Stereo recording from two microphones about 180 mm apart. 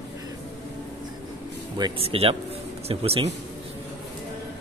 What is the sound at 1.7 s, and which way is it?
Speech, 30° right (ahead or behind).